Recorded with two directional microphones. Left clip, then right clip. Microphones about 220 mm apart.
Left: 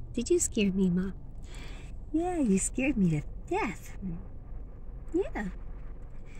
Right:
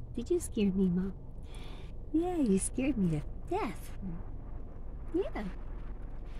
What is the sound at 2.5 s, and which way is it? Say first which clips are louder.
A woman's voice: left 2 dB; 15° left (ahead or behind).